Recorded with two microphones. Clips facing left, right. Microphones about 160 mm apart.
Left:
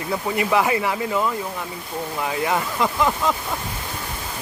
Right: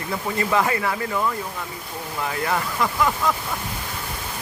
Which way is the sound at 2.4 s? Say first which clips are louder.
Left 1 dB; 15° left (ahead or behind).